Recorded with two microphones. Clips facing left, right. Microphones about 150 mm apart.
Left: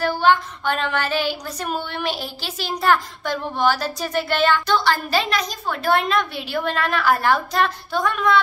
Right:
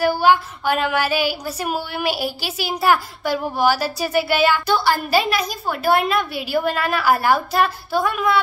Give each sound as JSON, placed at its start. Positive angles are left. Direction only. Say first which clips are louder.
{"t": 0.0, "sound": "a woman's voice", "louder": "right 2 dB", "side_deg": -10}